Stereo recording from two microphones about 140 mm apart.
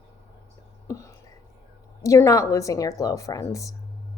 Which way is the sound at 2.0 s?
25° left (ahead or behind).